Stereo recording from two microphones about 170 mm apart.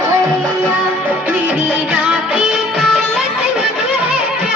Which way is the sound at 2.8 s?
Centre (ahead or behind).